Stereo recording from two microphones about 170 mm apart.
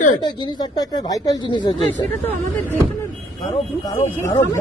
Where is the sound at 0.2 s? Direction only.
25° left (ahead or behind).